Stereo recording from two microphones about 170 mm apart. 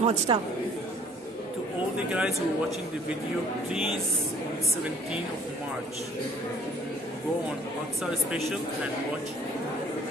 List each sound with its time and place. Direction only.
0.0 s a man's voice: 40° right (ahead or behind)
2.1 s speech: centre (ahead or behind)
8.0 s speech: centre (ahead or behind)